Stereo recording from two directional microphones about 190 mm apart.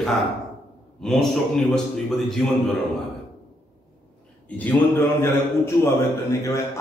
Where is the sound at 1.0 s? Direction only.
Centre (ahead or behind).